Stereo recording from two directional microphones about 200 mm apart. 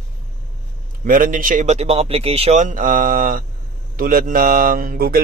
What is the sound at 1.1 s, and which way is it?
Speech, 45° right (ahead or behind).